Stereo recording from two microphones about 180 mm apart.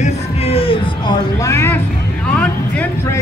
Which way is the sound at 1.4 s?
15° left (ahead or behind).